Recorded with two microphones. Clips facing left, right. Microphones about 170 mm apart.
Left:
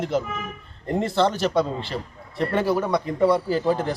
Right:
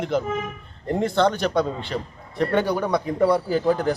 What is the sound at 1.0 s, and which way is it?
A man's voice, 5° left (ahead or behind).